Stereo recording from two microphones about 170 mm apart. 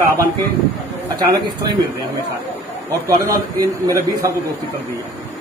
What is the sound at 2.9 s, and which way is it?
Speech, 20° right (ahead or behind).